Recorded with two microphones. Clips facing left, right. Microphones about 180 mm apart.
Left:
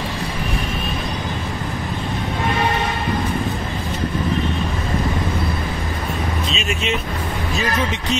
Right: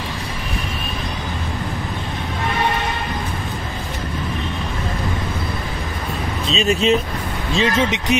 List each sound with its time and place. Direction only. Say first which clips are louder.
6.5 s vehicle: right 11 dB; 35° right (ahead or behind)
7.5 s speech: right 5 dB; 25° right (ahead or behind)